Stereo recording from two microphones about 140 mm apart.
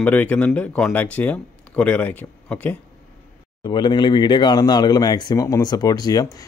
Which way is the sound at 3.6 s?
30° left (ahead or behind).